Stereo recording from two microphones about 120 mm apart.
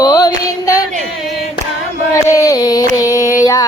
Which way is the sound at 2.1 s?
25° left (ahead or behind).